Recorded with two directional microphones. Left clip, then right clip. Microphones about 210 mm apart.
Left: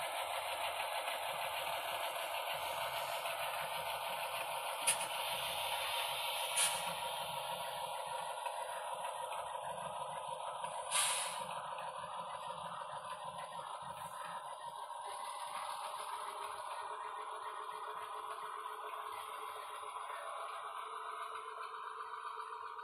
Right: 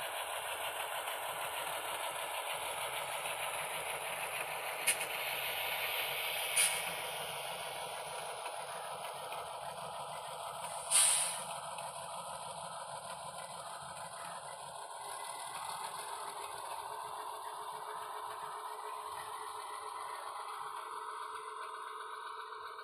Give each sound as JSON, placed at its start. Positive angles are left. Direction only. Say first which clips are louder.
{"t": 0.0, "sound": "engine", "louder": "even", "side_deg": -5}
{"t": 10.9, "sound": "vehicle", "louder": "right 4 dB", "side_deg": -45}